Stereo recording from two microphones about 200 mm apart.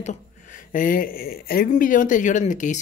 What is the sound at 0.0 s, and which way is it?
A woman's voice, 40° left (ahead or behind).